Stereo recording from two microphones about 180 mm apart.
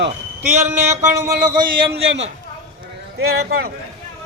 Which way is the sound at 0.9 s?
20° right (ahead or behind).